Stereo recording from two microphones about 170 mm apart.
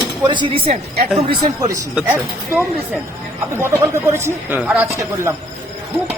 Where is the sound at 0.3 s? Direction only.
30° right (ahead or behind).